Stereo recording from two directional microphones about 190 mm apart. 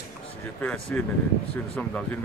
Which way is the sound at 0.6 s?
5° left (ahead or behind).